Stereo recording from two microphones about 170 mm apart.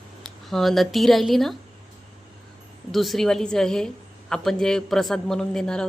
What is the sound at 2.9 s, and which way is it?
A woman's voice, centre (ahead or behind).